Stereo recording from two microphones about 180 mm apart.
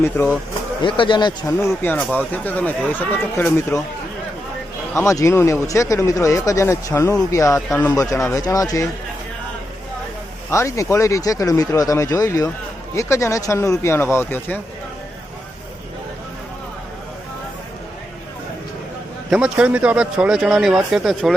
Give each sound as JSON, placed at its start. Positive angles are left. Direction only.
{"t": 0.8, "sound": "speech", "side_deg": 25}
{"t": 4.9, "sound": "speech", "side_deg": 15}
{"t": 10.5, "sound": "speech", "side_deg": 15}
{"t": 19.3, "sound": "speech", "side_deg": -5}